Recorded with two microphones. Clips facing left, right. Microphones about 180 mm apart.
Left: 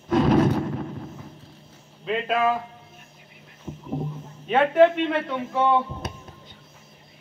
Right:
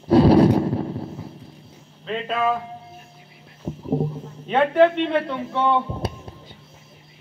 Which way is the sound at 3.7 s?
55° right (ahead or behind).